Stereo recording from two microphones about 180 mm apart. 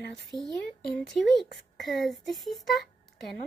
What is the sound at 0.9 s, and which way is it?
Speech, centre (ahead or behind).